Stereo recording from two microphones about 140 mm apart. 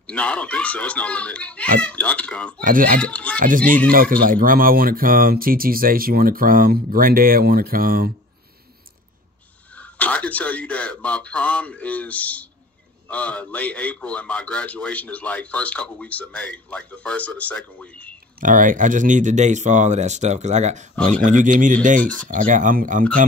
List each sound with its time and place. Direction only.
0.0 s a man's voice: 10° left (ahead or behind)
2.6 s speech: 75° right (ahead or behind)
3.0 s a man's voice: 10° left (ahead or behind)
3.3 s speech: 80° right
3.9 s speech: 90° right
9.8 s a man's voice: 10° left (ahead or behind)
18.4 s speech: 70° right (ahead or behind)